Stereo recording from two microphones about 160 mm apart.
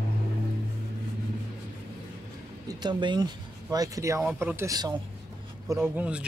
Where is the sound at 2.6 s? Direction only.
25° right (ahead or behind).